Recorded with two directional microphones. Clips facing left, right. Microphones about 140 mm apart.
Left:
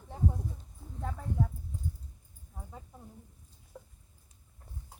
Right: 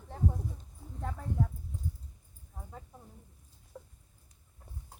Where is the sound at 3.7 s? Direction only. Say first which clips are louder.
Right 1 dB; centre (ahead or behind).